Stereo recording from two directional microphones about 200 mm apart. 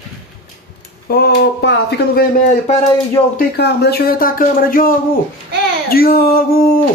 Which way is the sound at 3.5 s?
55° left (ahead or behind).